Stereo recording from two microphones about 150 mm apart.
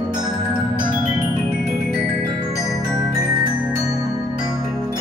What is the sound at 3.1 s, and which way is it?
Music, 20° right (ahead or behind).